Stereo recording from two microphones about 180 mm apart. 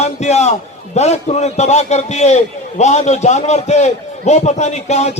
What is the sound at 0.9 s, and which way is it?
A man's voice, 40° left (ahead or behind).